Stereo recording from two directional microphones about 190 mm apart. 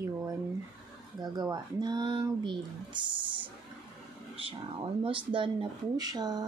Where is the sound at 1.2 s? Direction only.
20° right (ahead or behind).